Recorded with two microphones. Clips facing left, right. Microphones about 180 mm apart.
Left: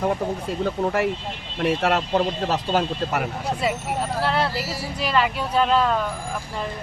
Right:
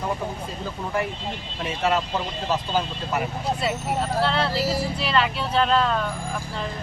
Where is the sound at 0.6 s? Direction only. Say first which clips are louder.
Left 6 dB; 65° left (ahead or behind).